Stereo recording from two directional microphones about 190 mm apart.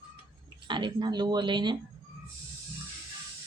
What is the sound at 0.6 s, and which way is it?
Speech, 25° right (ahead or behind).